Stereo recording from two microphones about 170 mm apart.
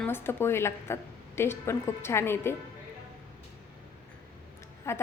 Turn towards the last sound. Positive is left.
turn(degrees=15)  # may be behind; listen again after turning